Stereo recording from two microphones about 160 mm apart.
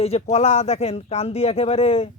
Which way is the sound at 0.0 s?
40° left (ahead or behind).